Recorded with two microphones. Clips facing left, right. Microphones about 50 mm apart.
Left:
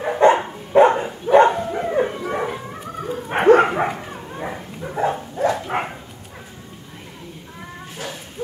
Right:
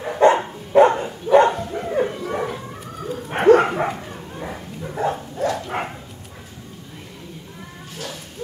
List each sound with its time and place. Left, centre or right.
0.2 s dog: centre